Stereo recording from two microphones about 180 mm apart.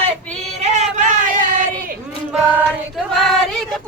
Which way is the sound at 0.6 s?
40° right (ahead or behind).